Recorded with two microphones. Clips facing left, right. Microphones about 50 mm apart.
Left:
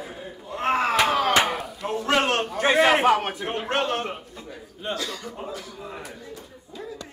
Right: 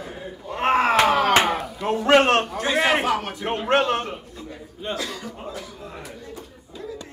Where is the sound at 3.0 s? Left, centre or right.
Left.